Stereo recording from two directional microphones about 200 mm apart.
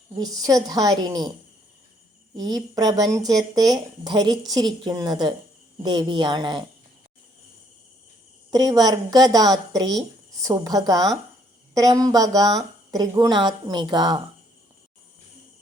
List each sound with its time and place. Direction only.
0.2 s speech: 20° right (ahead or behind)
2.3 s speech: 20° right (ahead or behind)
8.4 s speech: 20° right (ahead or behind)